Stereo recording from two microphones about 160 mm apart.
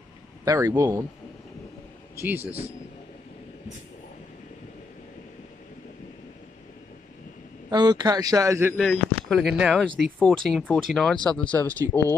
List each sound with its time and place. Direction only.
0.5 s speech: 20° right (ahead or behind)
2.1 s speech: 15° right (ahead or behind)
7.7 s speech: 25° right (ahead or behind)
8.7 s speech: 5° left (ahead or behind)
11.8 s speech: 20° right (ahead or behind)